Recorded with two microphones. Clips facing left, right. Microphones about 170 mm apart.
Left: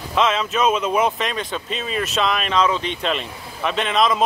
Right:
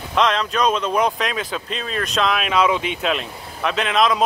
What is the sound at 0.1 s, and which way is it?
Speech, 5° left (ahead or behind).